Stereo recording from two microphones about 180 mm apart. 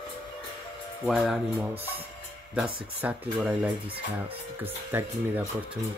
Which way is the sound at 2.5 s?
10° right (ahead or behind).